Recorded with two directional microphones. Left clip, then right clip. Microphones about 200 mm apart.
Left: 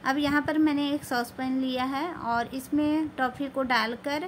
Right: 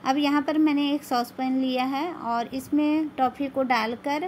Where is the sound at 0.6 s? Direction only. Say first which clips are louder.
Right 3 dB; 30° left (ahead or behind).